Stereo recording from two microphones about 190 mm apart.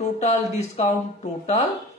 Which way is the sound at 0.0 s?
35° left (ahead or behind).